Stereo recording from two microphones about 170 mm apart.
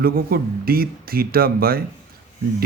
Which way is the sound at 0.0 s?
60° right (ahead or behind).